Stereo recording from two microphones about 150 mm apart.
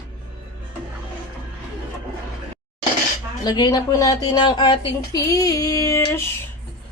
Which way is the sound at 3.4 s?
25° left (ahead or behind).